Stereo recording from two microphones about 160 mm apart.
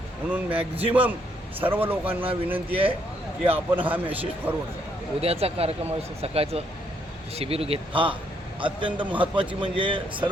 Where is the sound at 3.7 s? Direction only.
10° right (ahead or behind).